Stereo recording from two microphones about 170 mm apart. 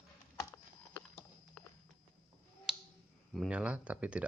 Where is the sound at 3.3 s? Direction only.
5° right (ahead or behind).